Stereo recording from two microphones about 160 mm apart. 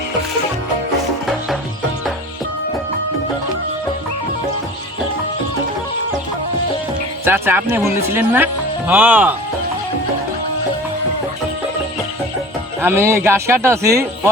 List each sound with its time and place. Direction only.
7.3 s a man's voice: 15° right (ahead or behind)
12.8 s a man's voice: 15° right (ahead or behind)